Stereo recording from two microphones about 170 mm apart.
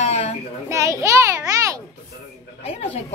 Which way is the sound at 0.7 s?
20° right (ahead or behind).